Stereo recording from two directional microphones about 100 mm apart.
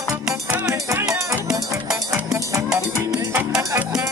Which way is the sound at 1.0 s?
35° right (ahead or behind).